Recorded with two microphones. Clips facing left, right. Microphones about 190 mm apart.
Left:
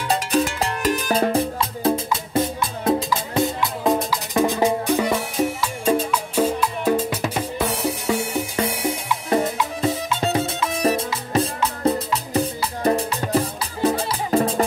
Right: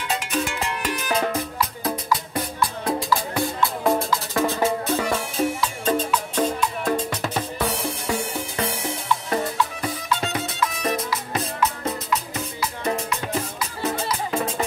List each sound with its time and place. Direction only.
0.1 s music: 35° left (ahead or behind); by 9.2 s 10° left (ahead or behind)
9.3 s music: 20° left (ahead or behind)